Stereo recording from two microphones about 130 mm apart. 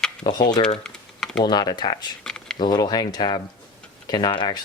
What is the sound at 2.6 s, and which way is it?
Speech, 35° left (ahead or behind).